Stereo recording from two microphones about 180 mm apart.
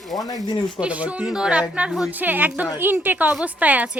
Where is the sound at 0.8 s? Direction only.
5° right (ahead or behind).